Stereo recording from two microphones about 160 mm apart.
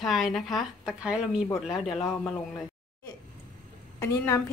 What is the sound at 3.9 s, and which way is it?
Speech, 15° left (ahead or behind).